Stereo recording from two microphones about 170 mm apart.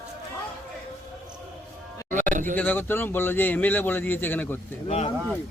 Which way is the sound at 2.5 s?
10° left (ahead or behind).